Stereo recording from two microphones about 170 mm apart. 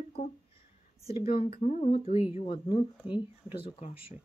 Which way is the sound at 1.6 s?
40° left (ahead or behind).